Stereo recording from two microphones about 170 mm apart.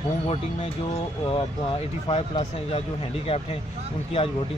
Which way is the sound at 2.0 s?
35° left (ahead or behind).